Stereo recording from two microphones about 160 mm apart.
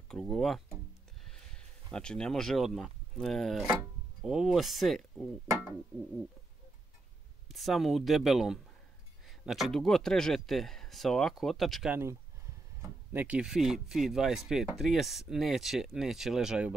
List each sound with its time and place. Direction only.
0.1 s speech: centre (ahead or behind)
7.4 s speech: centre (ahead or behind)
11.9 s speech: 15° right (ahead or behind)